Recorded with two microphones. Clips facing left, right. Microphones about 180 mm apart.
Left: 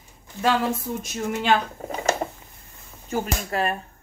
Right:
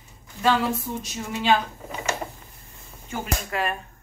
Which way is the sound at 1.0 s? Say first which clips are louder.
Left 2 dB; 50° left (ahead or behind).